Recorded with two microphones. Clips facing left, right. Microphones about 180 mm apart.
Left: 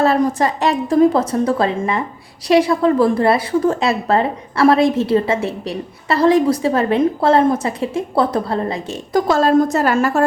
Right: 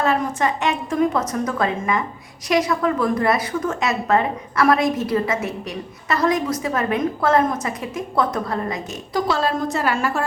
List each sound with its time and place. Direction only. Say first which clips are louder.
0.0 s a woman's voice: left 5 dB; 35° left (ahead or behind)
9.1 s a woman's voice: left 8 dB; 45° left (ahead or behind)